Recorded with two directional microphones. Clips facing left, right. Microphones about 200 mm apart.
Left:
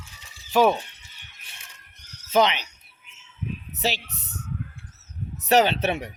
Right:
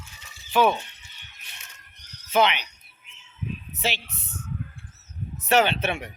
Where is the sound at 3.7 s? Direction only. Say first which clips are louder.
Left 3 dB; 40° left (ahead or behind).